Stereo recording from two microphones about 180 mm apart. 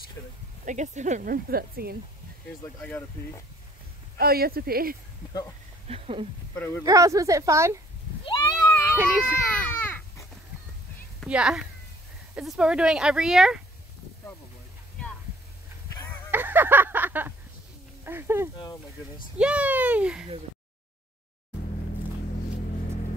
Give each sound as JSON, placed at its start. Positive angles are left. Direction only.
{"t": 0.7, "sound": "speech", "side_deg": -45}
{"t": 2.8, "sound": "speech", "side_deg": 10}
{"t": 4.2, "sound": "speech", "side_deg": -55}
{"t": 5.9, "sound": "speech", "side_deg": -35}
{"t": 6.5, "sound": "speech", "side_deg": 10}
{"t": 6.8, "sound": "speech", "side_deg": -20}
{"t": 8.5, "sound": "a sound", "side_deg": 15}
{"t": 8.9, "sound": "speech", "side_deg": -10}
{"t": 9.8, "sound": "a sound", "side_deg": 10}
{"t": 11.1, "sound": "speech", "side_deg": -5}
{"t": 15.9, "sound": "a sound", "side_deg": 10}
{"t": 16.3, "sound": "a sound", "side_deg": -10}
{"t": 18.0, "sound": "speech", "side_deg": -15}